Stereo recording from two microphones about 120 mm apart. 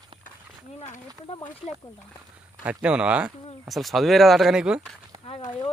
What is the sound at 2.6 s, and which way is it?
Speech, 10° right (ahead or behind).